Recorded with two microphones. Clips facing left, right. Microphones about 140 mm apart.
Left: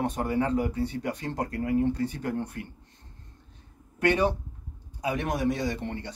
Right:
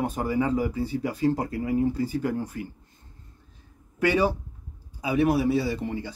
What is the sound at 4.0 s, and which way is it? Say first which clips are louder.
Speech: right 1 dB; 5° right (ahead or behind).